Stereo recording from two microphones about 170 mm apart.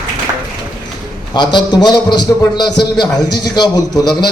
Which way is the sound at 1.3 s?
25° left (ahead or behind).